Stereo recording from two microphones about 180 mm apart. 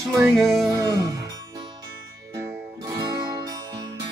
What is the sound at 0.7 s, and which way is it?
Music, 20° right (ahead or behind).